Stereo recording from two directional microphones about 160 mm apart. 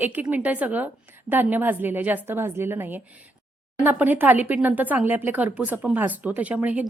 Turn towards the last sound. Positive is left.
turn(degrees=-10)  # may be behind; listen again after turning